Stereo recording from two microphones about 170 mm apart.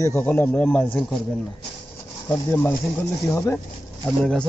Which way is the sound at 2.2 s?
10° left (ahead or behind).